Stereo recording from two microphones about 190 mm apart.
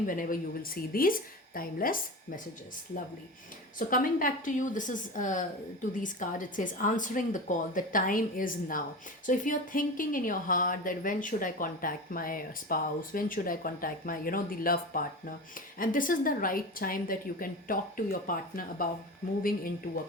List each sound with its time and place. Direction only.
0.1 s speech: 45° left (ahead or behind)
3.8 s speech: 45° left (ahead or behind)